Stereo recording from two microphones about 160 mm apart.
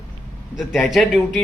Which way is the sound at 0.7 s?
Centre (ahead or behind).